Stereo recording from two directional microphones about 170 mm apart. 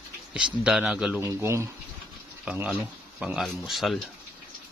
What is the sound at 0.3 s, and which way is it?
Speech, 5° right (ahead or behind).